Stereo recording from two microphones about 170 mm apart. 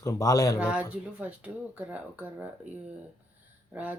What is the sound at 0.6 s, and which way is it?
Speech, 5° right (ahead or behind).